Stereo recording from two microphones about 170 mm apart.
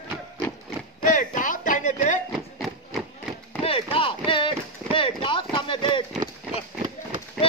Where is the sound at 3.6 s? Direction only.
35° left (ahead or behind).